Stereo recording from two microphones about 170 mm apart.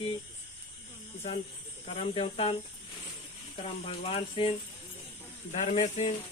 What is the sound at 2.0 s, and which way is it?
Speech, 35° left (ahead or behind).